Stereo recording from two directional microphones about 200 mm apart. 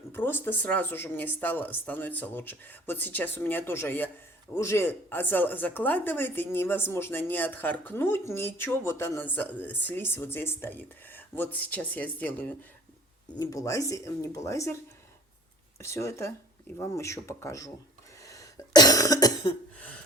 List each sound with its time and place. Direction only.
0.1 s speech: 10° left (ahead or behind)
15.8 s speech: 15° left (ahead or behind)
18.3 s cough: 20° left (ahead or behind)